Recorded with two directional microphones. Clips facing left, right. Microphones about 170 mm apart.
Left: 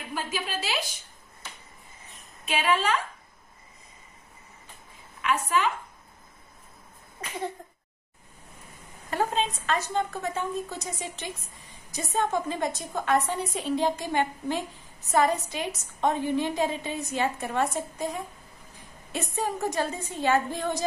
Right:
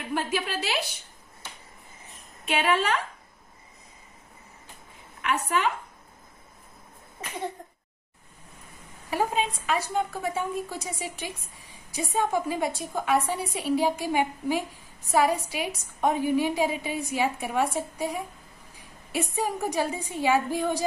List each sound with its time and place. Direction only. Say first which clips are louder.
0.1 s a woman's voice: right 4 dB; 65° right (ahead or behind)
2.4 s a woman's voice: right 1 dB; 60° right (ahead or behind)
5.2 s a woman's voice: left 1 dB; 55° right (ahead or behind)
9.1 s a woman's voice: right 1 dB; 10° right (ahead or behind)